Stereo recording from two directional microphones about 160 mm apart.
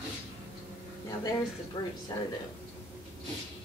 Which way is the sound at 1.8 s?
25° left (ahead or behind).